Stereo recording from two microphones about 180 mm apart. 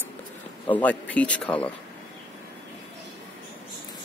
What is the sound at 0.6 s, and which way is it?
Speech, 10° left (ahead or behind).